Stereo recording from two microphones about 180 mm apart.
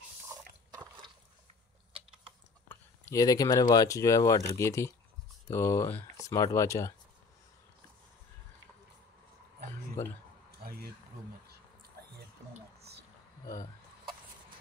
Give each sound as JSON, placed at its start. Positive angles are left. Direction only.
{"t": 0.7, "sound": "liquid", "side_deg": -20}
{"t": 2.7, "sound": "speech", "side_deg": 15}
{"t": 10.0, "sound": "a sound", "side_deg": 15}